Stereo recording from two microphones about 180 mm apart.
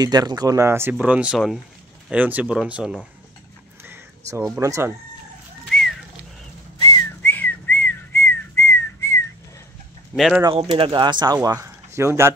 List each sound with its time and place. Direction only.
0.0 s speech: 20° right (ahead or behind); by 3.0 s 5° right (ahead or behind)
3.8 s a sound: 15° right (ahead or behind)
4.6 s speech: 15° right (ahead or behind)
5.7 s a sound: centre (ahead or behind)
6.9 s whistling: 10° left (ahead or behind)
10.1 s speech: centre (ahead or behind)
10.4 s speech: 25° right (ahead or behind)